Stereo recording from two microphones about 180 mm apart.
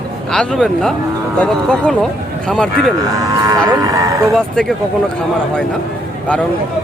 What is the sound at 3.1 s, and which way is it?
Speech, 20° right (ahead or behind).